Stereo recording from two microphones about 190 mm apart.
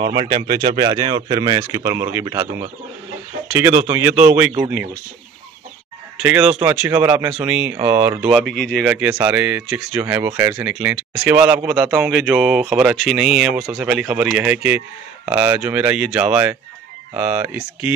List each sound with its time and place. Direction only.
0.0 s speech: 30° right (ahead or behind)
6.1 s speech: 5° right (ahead or behind)
8.3 s speech: centre (ahead or behind)